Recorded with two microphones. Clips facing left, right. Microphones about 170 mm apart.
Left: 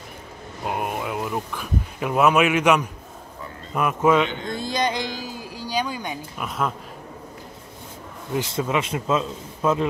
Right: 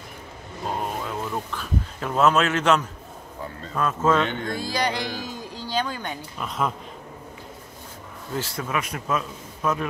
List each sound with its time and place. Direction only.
0.7 s a sound: 10° left (ahead or behind)
3.7 s speech: 15° left (ahead or behind)
8.3 s a man's voice: 20° left (ahead or behind)